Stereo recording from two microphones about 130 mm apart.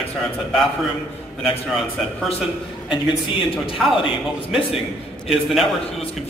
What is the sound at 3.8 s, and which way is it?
Speech, 5° right (ahead or behind).